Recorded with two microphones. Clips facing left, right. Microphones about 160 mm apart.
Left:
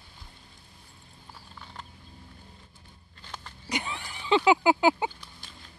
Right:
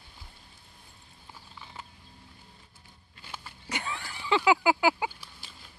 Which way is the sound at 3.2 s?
10° right (ahead or behind).